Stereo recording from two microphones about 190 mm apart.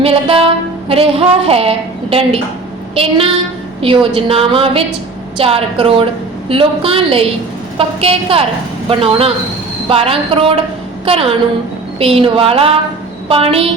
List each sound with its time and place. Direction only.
0.0 s a woman's voice: 30° right (ahead or behind)